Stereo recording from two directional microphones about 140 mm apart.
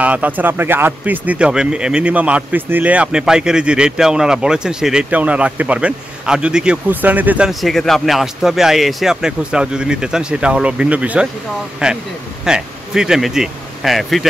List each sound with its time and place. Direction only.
0.0 s speech: 10° right (ahead or behind)